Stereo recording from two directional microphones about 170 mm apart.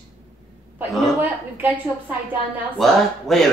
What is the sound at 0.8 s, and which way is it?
A woman's voice, 10° right (ahead or behind).